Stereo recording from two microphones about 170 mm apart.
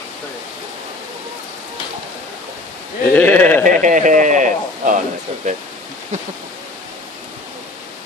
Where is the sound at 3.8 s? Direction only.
50° right (ahead or behind).